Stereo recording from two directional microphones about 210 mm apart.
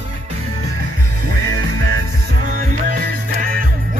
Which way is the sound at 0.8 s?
45° right (ahead or behind).